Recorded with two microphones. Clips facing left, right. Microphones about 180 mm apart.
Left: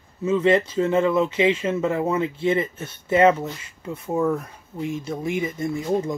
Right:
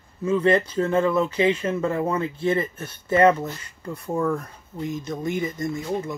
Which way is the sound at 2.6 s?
25° left (ahead or behind).